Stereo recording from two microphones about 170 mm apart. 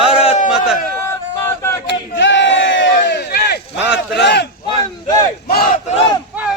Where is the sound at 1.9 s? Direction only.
90° left; by 3.6 s 70° left (ahead or behind).